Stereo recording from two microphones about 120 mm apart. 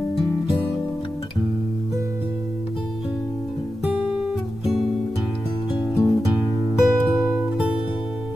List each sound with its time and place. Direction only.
5.7 s music: 30° left (ahead or behind)
6.7 s music: 5° right (ahead or behind)